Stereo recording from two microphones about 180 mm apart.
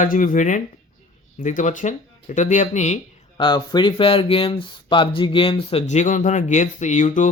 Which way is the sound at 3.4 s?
25° left (ahead or behind).